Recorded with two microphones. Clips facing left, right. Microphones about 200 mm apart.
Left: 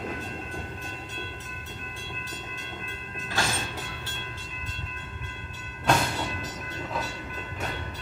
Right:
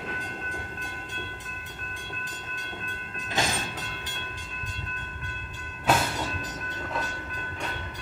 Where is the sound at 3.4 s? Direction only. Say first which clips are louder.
Right 1 dB; 20° right (ahead or behind).